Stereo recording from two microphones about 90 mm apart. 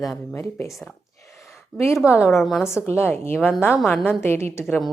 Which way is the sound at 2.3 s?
Centre (ahead or behind).